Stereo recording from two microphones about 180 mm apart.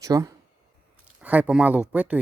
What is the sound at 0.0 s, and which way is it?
Speech, 20° right (ahead or behind).